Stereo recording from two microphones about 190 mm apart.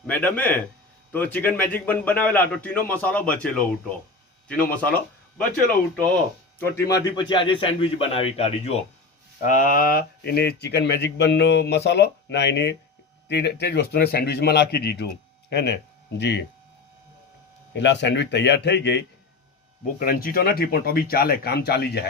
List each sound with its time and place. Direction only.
0.1 s speech: 10° left (ahead or behind)
6.6 s a man's voice: 15° left (ahead or behind); by 8.8 s 35° left (ahead or behind)
9.4 s speech: 45° left (ahead or behind); by 16.4 s 65° left (ahead or behind)
17.7 s speech: 70° left (ahead or behind)
20.0 s speech: 50° left (ahead or behind)